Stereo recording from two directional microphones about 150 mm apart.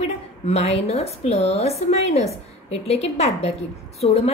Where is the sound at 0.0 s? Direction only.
45° left (ahead or behind).